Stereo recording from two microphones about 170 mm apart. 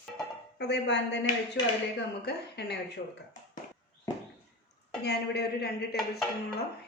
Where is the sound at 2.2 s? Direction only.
80° left.